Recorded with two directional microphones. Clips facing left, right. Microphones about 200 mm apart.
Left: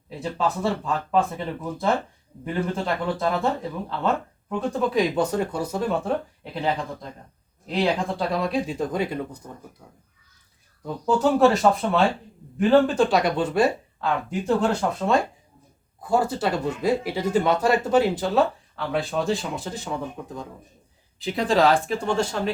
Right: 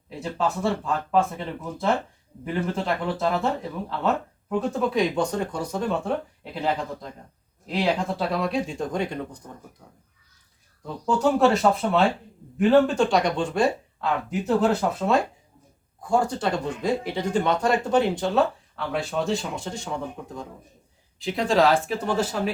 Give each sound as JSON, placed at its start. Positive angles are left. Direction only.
{"t": 0.1, "sound": "speech", "side_deg": 0}
{"t": 2.4, "sound": "speech", "side_deg": 0}
{"t": 10.8, "sound": "speech", "side_deg": 0}